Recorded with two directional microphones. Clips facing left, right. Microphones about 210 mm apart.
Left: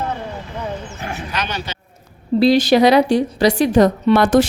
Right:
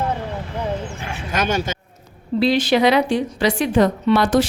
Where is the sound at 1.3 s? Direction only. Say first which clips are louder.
Right 9 dB; 45° right (ahead or behind).